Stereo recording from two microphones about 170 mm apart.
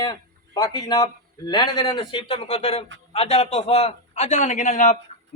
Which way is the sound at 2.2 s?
35° left (ahead or behind).